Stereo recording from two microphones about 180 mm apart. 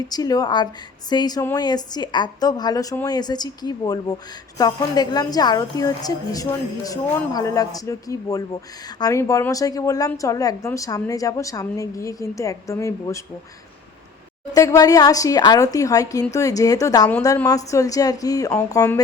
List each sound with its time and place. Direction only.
0.1 s a woman's voice: 20° left (ahead or behind)
14.5 s a woman's voice: 20° left (ahead or behind)